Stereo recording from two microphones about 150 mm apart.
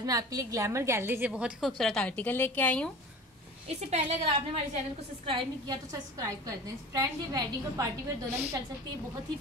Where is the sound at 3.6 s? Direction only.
45° right (ahead or behind).